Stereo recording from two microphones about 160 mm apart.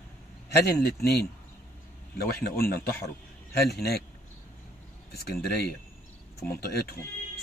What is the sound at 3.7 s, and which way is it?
Speech, 85° left.